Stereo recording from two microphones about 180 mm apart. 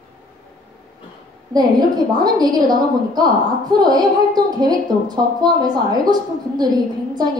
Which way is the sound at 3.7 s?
20° right (ahead or behind).